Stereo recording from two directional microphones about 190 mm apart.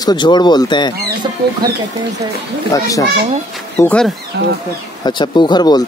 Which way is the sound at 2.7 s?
15° left (ahead or behind).